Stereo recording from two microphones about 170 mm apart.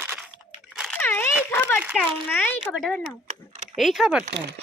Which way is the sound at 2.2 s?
10° left (ahead or behind).